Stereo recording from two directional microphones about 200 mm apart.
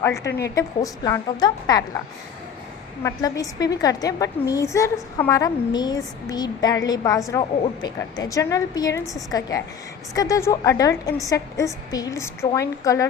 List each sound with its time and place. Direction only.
0.0 s a woman's voice: 15° left (ahead or behind)
3.0 s a woman's voice: 15° left (ahead or behind)